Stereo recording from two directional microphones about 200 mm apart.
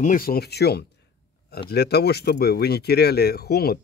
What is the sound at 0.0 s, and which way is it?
Speech, 45° left (ahead or behind).